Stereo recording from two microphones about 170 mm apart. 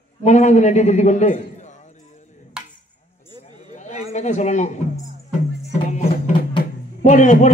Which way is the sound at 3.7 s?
45° left (ahead or behind).